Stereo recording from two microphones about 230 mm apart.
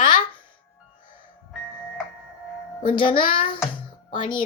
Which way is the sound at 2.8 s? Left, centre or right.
Left.